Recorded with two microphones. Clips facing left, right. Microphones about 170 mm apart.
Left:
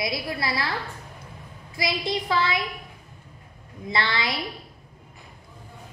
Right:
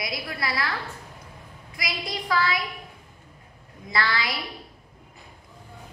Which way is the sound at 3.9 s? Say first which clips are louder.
Even; 25° left (ahead or behind).